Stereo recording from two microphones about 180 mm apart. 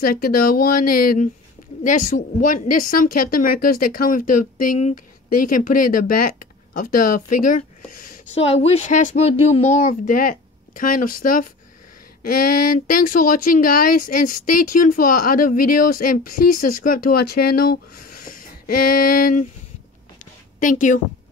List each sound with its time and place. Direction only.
0.0 s speech: 55° left (ahead or behind)
8.4 s speech: 35° left (ahead or behind); by 19.4 s 55° left (ahead or behind)
20.2 s a sound: 45° left (ahead or behind)